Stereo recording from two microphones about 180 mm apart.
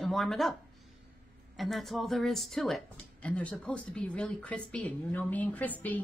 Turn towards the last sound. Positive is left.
turn(degrees=10)  # may be behind; listen again after turning